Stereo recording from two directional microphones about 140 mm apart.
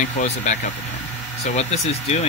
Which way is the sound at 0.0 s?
65° left (ahead or behind).